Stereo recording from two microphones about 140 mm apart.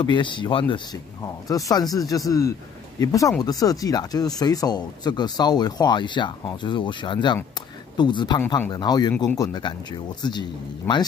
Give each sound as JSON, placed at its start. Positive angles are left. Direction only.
{"t": 0.0, "sound": "speech", "side_deg": 35}
{"t": 1.5, "sound": "speech", "side_deg": 25}